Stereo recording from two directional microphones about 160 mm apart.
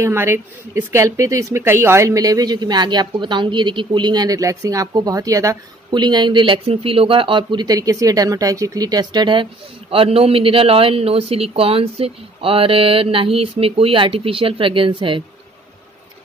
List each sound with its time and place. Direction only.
0.0 s speech: 15° right (ahead or behind); by 15.2 s 30° right (ahead or behind)